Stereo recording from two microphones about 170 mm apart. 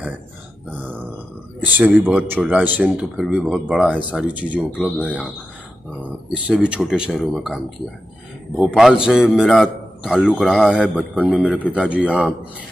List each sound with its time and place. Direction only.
0.7 s grunt: 10° right (ahead or behind)
1.6 s speech: 10° right (ahead or behind)
6.3 s a man's voice: 5° right (ahead or behind)